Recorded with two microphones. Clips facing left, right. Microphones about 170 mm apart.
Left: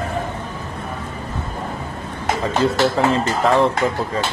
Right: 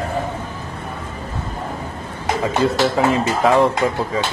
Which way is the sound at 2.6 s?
Centre (ahead or behind).